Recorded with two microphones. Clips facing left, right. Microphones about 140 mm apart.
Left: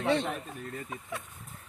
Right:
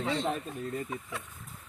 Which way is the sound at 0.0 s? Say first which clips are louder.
Left 4 dB; 70° left (ahead or behind).